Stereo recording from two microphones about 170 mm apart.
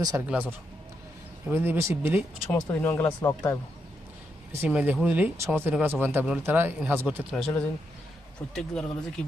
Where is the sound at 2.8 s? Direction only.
20° left (ahead or behind).